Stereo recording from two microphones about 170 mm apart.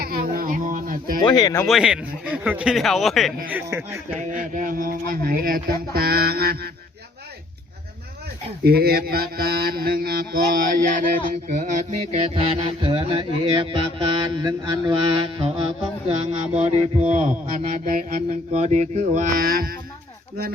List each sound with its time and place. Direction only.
0.0 s a sound: 60° right (ahead or behind)
1.2 s speech: 20° left (ahead or behind)
1.6 s a man's voice: 5° right (ahead or behind)
3.5 s speech: 15° right (ahead or behind)
4.5 s mantra: 55° right (ahead or behind)
8.6 s mantra: 65° right (ahead or behind); by 15.6 s 30° right (ahead or behind)
16.6 s mantra: 45° right (ahead or behind)
19.5 s mantra: 60° right (ahead or behind)